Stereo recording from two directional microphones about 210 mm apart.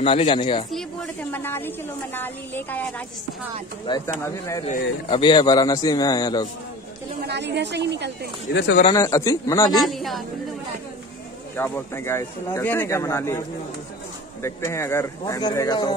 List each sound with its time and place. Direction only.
0.0 s a man's voice: 25° left (ahead or behind)
0.7 s a sound: centre (ahead or behind)
2.1 s speech: 10° left (ahead or behind)
3.9 s a man's voice: 25° left (ahead or behind)
7.2 s a woman's voice: 55° right (ahead or behind)
8.5 s speech: 55° left (ahead or behind)
8.9 s speech: 15° left (ahead or behind)
9.8 s a woman's voice: centre (ahead or behind)
11.5 s speech: 10° left (ahead or behind)